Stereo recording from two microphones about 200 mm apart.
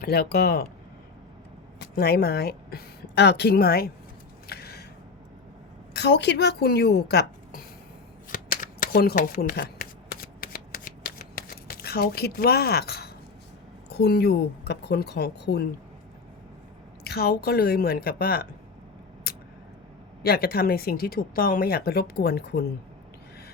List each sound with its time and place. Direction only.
0.0 s speech: 50° left (ahead or behind)
1.8 s speech: 50° left (ahead or behind)
4.4 s a sound: 50° left (ahead or behind)
5.9 s a woman's voice: 60° left (ahead or behind)
8.3 s shuffling cards: 45° left (ahead or behind)
13.9 s speech: 55° left (ahead or behind)
17.0 s speech: 50° left (ahead or behind)
20.2 s speech: 50° left (ahead or behind)